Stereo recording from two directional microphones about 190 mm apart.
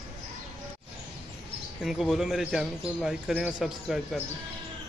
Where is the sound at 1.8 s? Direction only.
Centre (ahead or behind).